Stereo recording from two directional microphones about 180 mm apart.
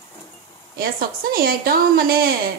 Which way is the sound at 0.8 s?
55° right (ahead or behind).